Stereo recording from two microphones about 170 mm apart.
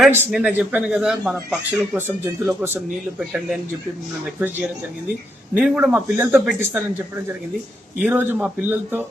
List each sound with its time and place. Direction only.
0.3 s speech: 5° right (ahead or behind)
8.0 s speech: 10° right (ahead or behind)